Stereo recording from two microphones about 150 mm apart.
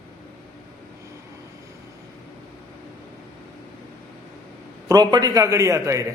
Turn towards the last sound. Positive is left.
turn(degrees=-20)  # may be behind; listen again after turning